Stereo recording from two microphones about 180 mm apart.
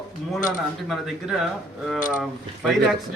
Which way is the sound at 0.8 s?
Centre (ahead or behind).